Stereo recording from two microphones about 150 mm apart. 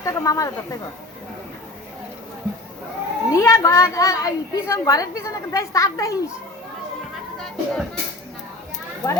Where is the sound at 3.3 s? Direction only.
20° left (ahead or behind).